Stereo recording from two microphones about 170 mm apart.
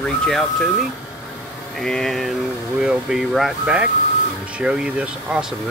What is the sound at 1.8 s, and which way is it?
Speech, 5° left (ahead or behind).